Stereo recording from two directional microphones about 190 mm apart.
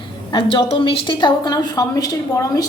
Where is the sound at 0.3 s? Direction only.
25° left (ahead or behind).